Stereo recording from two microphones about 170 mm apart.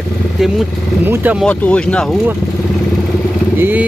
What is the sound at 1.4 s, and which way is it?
Speech, 10° left (ahead or behind).